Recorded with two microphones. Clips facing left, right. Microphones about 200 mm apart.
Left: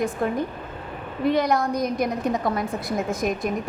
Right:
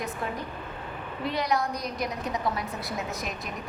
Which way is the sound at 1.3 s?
50° left (ahead or behind).